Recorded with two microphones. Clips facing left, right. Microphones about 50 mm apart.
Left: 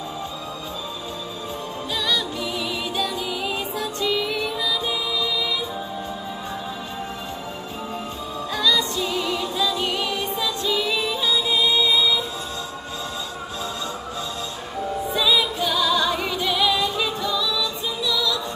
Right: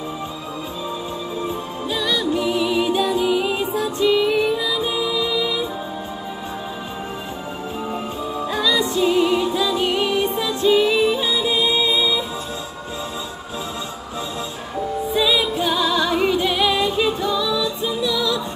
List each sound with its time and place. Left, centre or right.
2.0 s music: centre
8.5 s music: centre
15.1 s music: right